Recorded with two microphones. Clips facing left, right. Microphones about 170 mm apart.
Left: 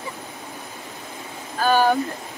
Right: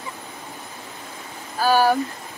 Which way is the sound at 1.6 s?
5° right (ahead or behind).